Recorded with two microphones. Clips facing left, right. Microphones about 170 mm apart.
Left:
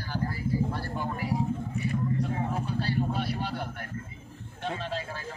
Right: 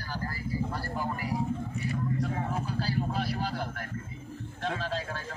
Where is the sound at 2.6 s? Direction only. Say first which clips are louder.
Left 2 dB; centre (ahead or behind).